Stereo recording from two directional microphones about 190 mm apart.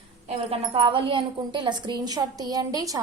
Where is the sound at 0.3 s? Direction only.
30° right (ahead or behind).